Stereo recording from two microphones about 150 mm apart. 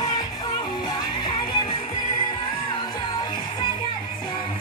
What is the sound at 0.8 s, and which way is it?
Music, 30° left (ahead or behind).